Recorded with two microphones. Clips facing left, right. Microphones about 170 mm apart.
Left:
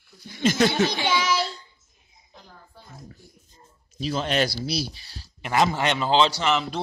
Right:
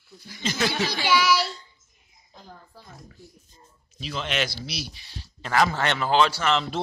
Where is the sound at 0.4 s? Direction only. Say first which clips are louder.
Left 7 dB; 50° left (ahead or behind).